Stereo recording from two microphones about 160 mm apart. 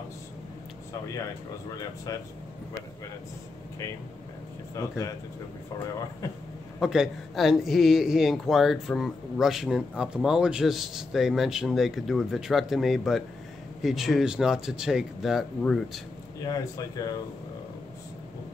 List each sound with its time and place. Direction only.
4.7 s speech: 20° left (ahead or behind)
6.8 s speech: 5° right (ahead or behind)
16.4 s speech: 25° left (ahead or behind)